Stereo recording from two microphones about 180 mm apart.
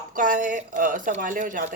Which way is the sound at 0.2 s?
50° right (ahead or behind).